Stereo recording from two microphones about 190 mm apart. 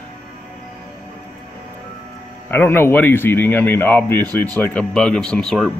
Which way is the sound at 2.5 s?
10° left (ahead or behind).